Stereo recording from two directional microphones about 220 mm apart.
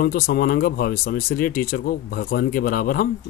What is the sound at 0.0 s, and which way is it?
Speech, 40° left (ahead or behind).